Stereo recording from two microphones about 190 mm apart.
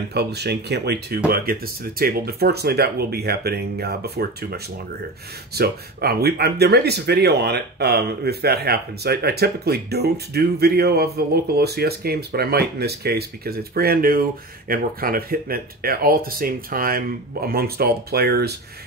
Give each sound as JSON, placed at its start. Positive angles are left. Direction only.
{"t": 0.1, "sound": "speech", "side_deg": -60}